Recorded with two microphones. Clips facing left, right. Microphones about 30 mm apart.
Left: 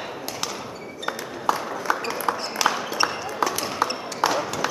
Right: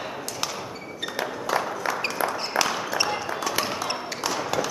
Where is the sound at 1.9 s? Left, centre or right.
Centre.